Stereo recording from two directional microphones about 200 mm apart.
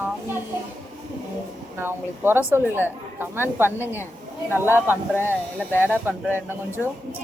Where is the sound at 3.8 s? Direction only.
10° left (ahead or behind).